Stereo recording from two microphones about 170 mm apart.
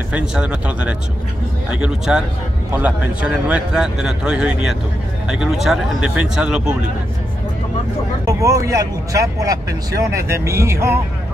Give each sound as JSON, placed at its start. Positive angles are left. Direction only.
{"t": 0.1, "sound": "speech", "side_deg": -5}
{"t": 8.3, "sound": "speech", "side_deg": -20}